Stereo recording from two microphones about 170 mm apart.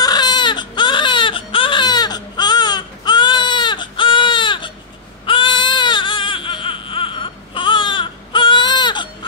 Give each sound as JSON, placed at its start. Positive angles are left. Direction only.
{"t": 0.0, "sound": "baby cry", "side_deg": 25}